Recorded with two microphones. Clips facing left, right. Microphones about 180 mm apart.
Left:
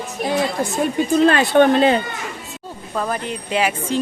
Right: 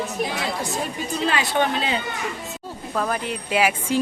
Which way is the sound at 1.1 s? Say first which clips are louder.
Left 9 dB; 55° left (ahead or behind).